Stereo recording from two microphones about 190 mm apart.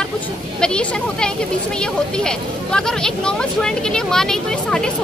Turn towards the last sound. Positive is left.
turn(degrees=5)  # may be behind; listen again after turning